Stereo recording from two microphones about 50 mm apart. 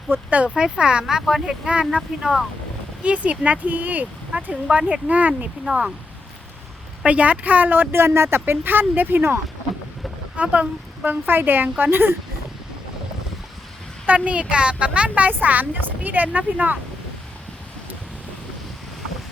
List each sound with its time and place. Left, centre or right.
0.1 s a woman's voice: right
0.5 s speech: centre
2.0 s speech: centre
3.0 s speech: right
4.7 s a woman's voice: right
5.6 s speech: centre
7.0 s speech: right
10.3 s speech: right
11.0 s speech: right
14.1 s a woman's voice: right